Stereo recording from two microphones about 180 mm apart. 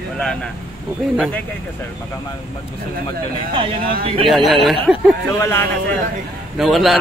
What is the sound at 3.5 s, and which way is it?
Speech, 30° right (ahead or behind).